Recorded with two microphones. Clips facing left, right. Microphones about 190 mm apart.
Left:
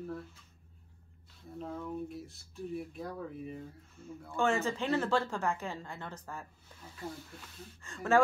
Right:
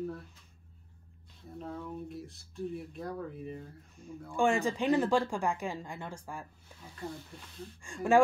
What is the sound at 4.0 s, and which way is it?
Speech, 15° right (ahead or behind).